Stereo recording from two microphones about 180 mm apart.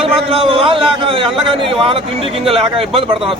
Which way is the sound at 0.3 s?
30° right (ahead or behind).